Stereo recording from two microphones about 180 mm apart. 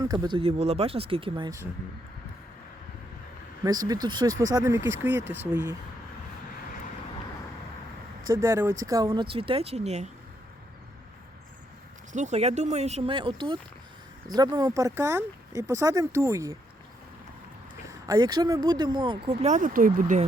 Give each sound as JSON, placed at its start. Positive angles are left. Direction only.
{"t": 0.0, "sound": "speech", "side_deg": -20}
{"t": 3.6, "sound": "speech", "side_deg": -20}
{"t": 8.3, "sound": "speech", "side_deg": -15}
{"t": 12.1, "sound": "speech", "side_deg": -40}
{"t": 18.0, "sound": "speech", "side_deg": -20}